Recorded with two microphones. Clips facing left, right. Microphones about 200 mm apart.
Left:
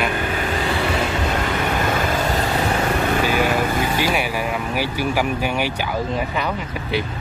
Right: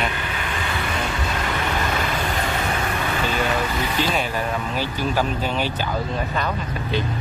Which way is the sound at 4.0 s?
10° left (ahead or behind).